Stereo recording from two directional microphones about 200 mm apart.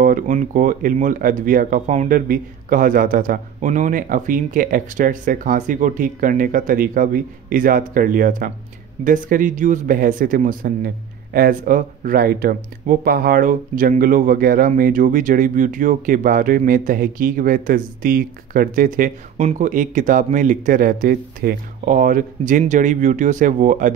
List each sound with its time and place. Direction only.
0.0 s speech: 40° right (ahead or behind)